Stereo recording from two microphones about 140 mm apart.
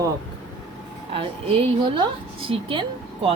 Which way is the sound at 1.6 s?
35° right (ahead or behind).